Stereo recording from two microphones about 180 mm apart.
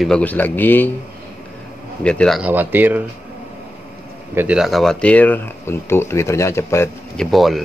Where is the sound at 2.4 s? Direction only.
10° right (ahead or behind).